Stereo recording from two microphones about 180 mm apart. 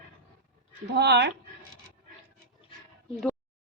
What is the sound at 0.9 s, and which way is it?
Speech, 70° right (ahead or behind).